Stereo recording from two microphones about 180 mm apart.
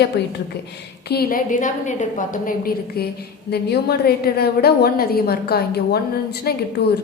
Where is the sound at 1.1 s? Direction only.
55° left (ahead or behind).